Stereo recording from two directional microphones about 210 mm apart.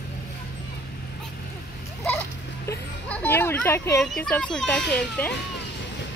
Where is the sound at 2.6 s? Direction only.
10° left (ahead or behind).